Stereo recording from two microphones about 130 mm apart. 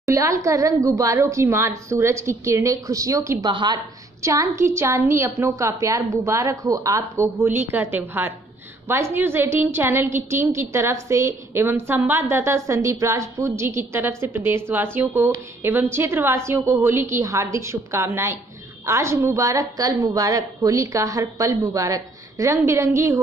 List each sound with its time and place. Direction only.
0.0 s a woman's voice: 25° right (ahead or behind)
3.4 s a woman's voice: 35° right (ahead or behind)
4.2 s a woman's voice: 20° right (ahead or behind)